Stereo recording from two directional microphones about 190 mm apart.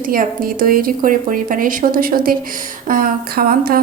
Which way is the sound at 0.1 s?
50° right (ahead or behind).